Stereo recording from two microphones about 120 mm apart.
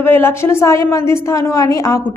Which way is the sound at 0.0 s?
20° left (ahead or behind).